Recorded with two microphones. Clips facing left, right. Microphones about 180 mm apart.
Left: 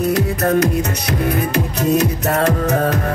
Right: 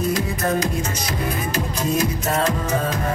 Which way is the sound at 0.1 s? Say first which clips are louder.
Left 5 dB; 70° left (ahead or behind).